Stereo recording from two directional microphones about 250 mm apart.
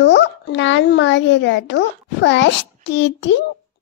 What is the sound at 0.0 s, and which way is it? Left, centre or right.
A child's voice, left.